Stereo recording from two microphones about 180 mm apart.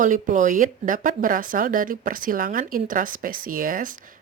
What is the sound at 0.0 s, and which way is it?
Speech, 45° right (ahead or behind).